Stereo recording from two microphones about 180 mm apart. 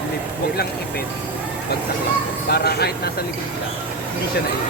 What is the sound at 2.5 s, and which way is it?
Speech, 60° left (ahead or behind).